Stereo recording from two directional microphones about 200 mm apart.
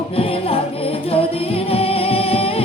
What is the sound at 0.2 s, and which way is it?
Music, 30° left (ahead or behind).